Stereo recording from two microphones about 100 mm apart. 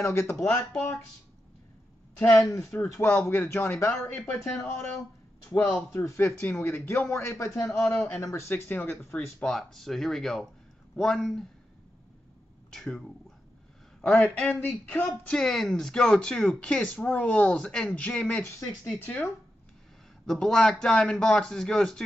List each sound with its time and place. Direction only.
0.0 s speech: 25° left (ahead or behind)
2.1 s speech: 15° left (ahead or behind)
2.4 s speech: 25° left (ahead or behind)
4.6 s speech: 30° left (ahead or behind)
5.9 s speech: 25° left (ahead or behind)
7.6 s speech: 5° left (ahead or behind)
7.9 s speech: 15° left (ahead or behind)
8.2 s speech: 30° left (ahead or behind)
9.4 s speech: 5° left (ahead or behind)
12.7 s speech: 5° left (ahead or behind)
20.2 s speech: 5° left (ahead or behind)